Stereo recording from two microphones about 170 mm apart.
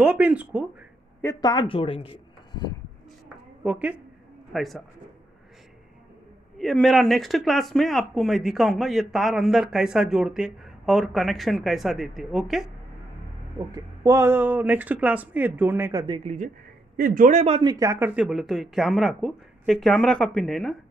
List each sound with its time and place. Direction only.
0.0 s speech: 5° right (ahead or behind)
1.2 s a man's voice: 25° left (ahead or behind)
3.6 s a man's voice: 5° right (ahead or behind)
6.6 s speech: centre (ahead or behind)
13.7 s speech: 20° right (ahead or behind)
16.3 s speech: 50° right (ahead or behind)
17.6 s speech: 20° right (ahead or behind); by 20.7 s 5° left (ahead or behind)